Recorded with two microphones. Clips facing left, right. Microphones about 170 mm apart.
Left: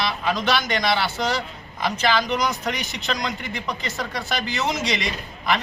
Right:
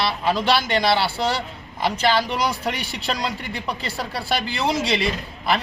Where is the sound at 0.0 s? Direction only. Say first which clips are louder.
Right 2 dB; 30° right (ahead or behind).